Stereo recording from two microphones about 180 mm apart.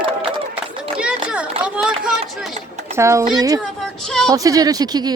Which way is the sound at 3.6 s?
Centre (ahead or behind).